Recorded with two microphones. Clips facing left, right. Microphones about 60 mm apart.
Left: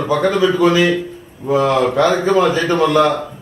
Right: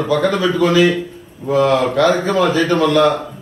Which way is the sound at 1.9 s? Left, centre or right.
Centre.